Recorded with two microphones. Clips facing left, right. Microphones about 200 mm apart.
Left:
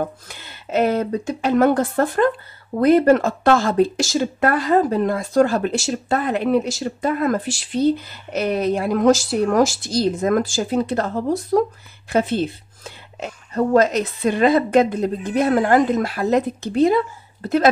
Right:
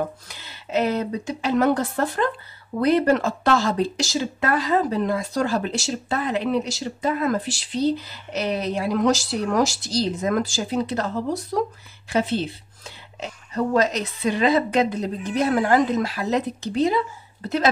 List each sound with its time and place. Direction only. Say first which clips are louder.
0.3 s speech: left 2 dB; 50° left (ahead or behind)